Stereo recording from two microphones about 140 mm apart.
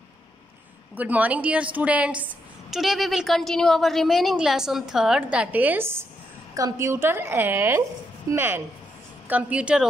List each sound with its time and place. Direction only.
0.9 s a woman's voice: 10° right (ahead or behind)